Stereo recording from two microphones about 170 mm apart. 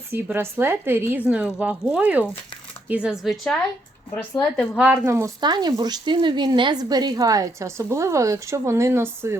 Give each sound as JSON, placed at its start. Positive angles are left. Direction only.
{"t": 0.1, "sound": "speech", "side_deg": -15}
{"t": 4.8, "sound": "speech", "side_deg": -15}